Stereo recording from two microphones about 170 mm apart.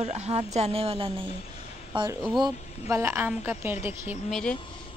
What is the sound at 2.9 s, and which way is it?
Speech, 15° right (ahead or behind).